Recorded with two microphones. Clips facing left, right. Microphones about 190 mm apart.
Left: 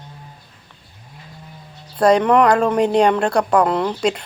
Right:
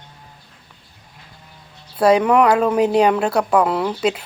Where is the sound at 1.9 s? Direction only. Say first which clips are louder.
Even; 5° right (ahead or behind).